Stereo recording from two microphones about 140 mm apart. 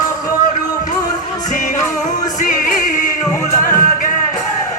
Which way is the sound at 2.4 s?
70° left (ahead or behind).